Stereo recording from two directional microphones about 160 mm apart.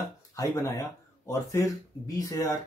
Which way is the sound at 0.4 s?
20° left (ahead or behind).